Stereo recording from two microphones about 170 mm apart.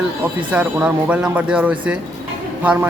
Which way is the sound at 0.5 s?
10° right (ahead or behind).